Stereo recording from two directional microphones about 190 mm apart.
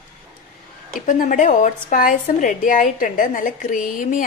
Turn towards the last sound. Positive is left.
turn(degrees=45)  # may be behind; listen again after turning